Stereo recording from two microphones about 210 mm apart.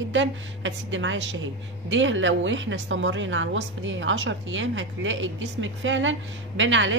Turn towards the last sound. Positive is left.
turn(degrees=-65)  # may be behind; listen again after turning